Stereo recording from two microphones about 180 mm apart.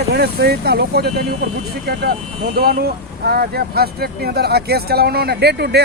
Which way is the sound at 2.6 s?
60° right (ahead or behind).